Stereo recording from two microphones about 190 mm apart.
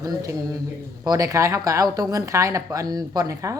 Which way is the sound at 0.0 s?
20° right (ahead or behind).